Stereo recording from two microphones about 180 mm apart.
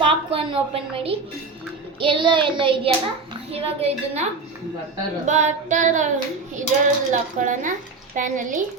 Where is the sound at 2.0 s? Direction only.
30° right (ahead or behind).